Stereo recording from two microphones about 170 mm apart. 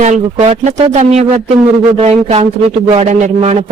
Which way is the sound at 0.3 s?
35° right (ahead or behind).